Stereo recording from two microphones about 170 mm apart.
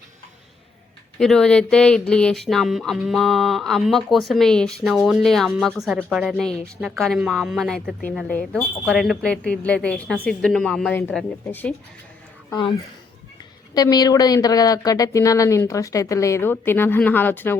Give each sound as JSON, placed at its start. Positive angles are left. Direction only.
{"t": 1.2, "sound": "speech", "side_deg": 5}
{"t": 12.5, "sound": "speech", "side_deg": 25}
{"t": 13.7, "sound": "speech", "side_deg": 20}